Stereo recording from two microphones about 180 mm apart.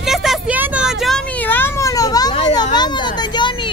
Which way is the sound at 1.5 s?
15° left (ahead or behind).